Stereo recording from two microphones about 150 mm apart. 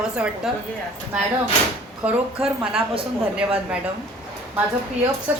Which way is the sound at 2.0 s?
10° right (ahead or behind).